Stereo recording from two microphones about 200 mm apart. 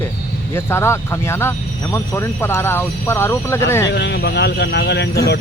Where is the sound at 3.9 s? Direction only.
60° left (ahead or behind).